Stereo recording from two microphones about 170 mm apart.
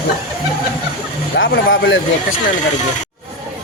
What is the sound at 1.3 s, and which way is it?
Speech, 90° left.